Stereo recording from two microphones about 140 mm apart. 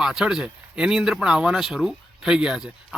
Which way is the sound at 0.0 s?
5° right (ahead or behind).